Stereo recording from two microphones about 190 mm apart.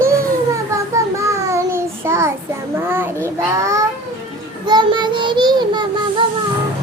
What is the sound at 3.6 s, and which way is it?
Babbling, 15° right (ahead or behind).